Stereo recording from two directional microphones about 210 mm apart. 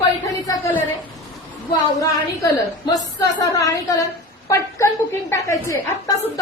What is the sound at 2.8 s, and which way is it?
A woman's voice, 15° left (ahead or behind).